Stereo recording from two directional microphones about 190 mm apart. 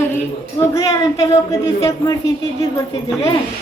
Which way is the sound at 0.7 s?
20° left (ahead or behind).